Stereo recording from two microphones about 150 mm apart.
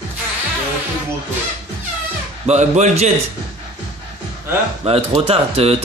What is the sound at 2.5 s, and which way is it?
Speech, 50° right (ahead or behind).